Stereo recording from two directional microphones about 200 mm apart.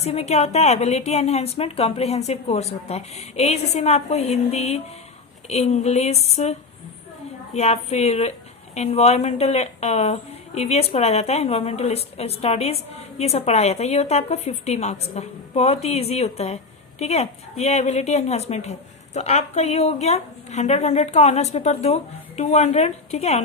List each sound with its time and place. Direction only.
0.0 s a woman's voice: 30° left (ahead or behind)